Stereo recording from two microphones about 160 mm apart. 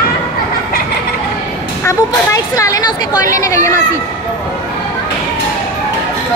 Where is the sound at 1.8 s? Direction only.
20° left (ahead or behind).